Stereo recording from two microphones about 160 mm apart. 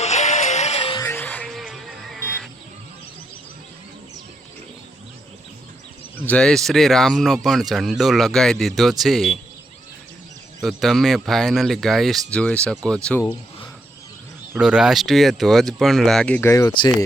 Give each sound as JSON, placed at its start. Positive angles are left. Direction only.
{"t": 0.0, "sound": "music", "side_deg": 45}
{"t": 0.9, "sound": "music", "side_deg": 15}
{"t": 1.5, "sound": "music", "side_deg": 0}
{"t": 6.1, "sound": "speech", "side_deg": 10}
{"t": 10.6, "sound": "speech", "side_deg": 0}
{"t": 14.6, "sound": "speech", "side_deg": -5}
{"t": 16.5, "sound": "speech", "side_deg": 20}